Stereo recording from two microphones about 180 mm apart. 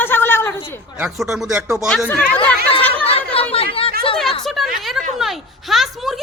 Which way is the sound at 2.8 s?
10° left (ahead or behind).